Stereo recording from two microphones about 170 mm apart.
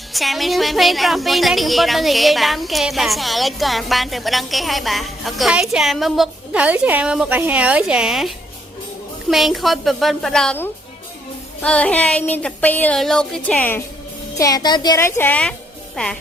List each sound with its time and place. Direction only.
0.1 s speech: centre (ahead or behind)
9.3 s speech: centre (ahead or behind)
14.3 s speech: 20° left (ahead or behind); by 16.1 s 5° left (ahead or behind)